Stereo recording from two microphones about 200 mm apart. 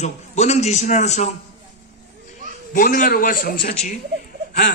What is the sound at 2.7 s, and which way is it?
Speech, 40° left (ahead or behind).